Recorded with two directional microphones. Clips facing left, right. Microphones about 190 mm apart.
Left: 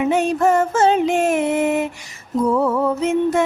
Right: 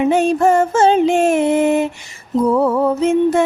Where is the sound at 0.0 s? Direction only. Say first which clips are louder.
Right 3 dB; 30° right (ahead or behind).